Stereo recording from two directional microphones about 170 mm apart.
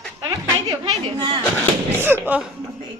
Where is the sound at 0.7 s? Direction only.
25° right (ahead or behind).